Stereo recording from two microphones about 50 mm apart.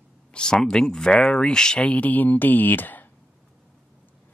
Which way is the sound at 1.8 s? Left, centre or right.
Left.